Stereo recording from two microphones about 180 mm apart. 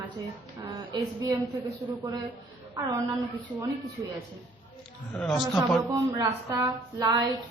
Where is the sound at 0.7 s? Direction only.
20° right (ahead or behind).